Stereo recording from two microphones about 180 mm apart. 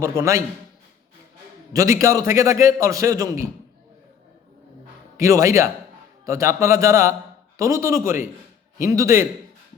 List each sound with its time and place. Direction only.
0.0 s a man's voice: 15° right (ahead or behind)
1.7 s a man's voice: 20° right (ahead or behind)
5.1 s a man's voice: 15° right (ahead or behind)